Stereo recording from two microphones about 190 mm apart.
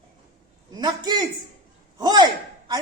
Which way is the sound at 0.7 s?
20° right (ahead or behind).